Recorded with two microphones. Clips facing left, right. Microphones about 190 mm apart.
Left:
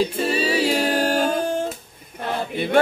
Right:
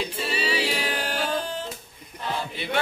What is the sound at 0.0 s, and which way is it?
A capella, 45° left (ahead or behind).